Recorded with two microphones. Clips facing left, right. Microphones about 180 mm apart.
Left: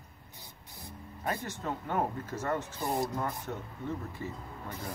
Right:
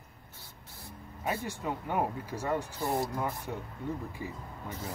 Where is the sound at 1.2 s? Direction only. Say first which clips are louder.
Right 1 dB; 10° right (ahead or behind).